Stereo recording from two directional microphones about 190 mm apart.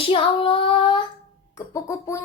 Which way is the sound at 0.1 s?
25° left (ahead or behind).